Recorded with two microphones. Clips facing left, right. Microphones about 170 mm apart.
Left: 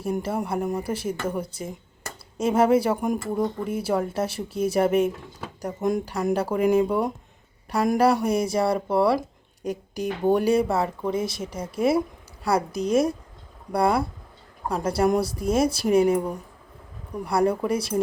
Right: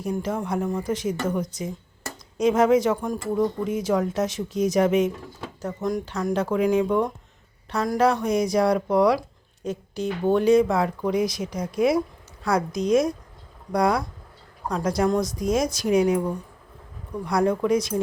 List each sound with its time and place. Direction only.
0.0 s a woman's voice: 5° left (ahead or behind)
5.6 s speech: 20° left (ahead or behind)
6.3 s a woman's voice: 10° left (ahead or behind)